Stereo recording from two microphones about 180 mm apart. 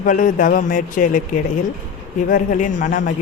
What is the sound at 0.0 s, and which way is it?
Speech, 50° left (ahead or behind).